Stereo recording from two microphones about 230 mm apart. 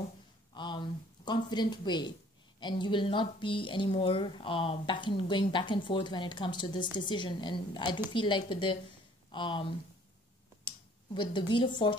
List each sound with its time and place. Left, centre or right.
0.6 s speech: centre
11.1 s speech: left